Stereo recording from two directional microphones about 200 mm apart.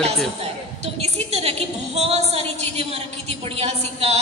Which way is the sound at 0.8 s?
30° right (ahead or behind).